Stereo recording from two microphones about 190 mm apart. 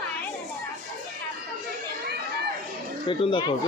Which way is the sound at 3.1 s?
25° left (ahead or behind).